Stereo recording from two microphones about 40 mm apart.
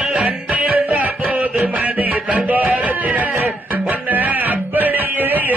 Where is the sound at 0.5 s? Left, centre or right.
Right.